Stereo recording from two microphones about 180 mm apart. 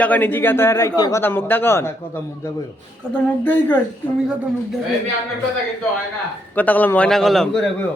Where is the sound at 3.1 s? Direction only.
10° left (ahead or behind).